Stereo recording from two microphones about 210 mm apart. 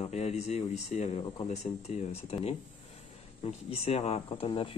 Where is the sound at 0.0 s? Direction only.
30° left (ahead or behind).